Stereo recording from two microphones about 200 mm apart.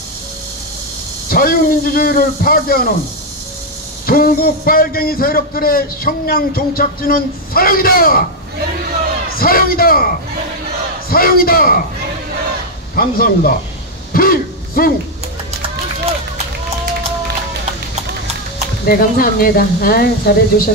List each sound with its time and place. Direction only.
1.3 s a man's voice: 50° left (ahead or behind)
4.0 s a man's voice: 50° left (ahead or behind)
9.4 s a man's voice: 50° left (ahead or behind)
11.1 s a man's voice: 50° left (ahead or behind)
12.9 s a man's voice: 45° left (ahead or behind)
14.1 s a sound: 45° left (ahead or behind)
18.9 s a man's voice: 50° left (ahead or behind)